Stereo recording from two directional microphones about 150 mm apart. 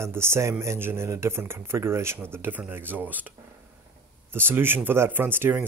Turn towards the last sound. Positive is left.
turn(degrees=-15)  # may be behind; listen again after turning